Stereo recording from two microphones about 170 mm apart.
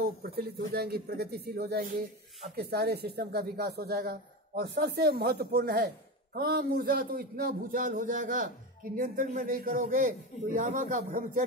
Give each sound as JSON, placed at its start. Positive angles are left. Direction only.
{"t": 0.2, "sound": "a man's voice", "side_deg": -65}